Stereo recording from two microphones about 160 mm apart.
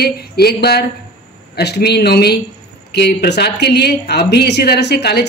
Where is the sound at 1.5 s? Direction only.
90° left.